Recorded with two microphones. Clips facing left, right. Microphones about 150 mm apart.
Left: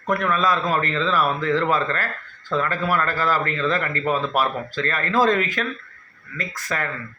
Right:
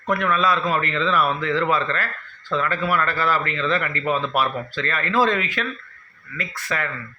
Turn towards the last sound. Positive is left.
turn(degrees=40)  # may be behind; listen again after turning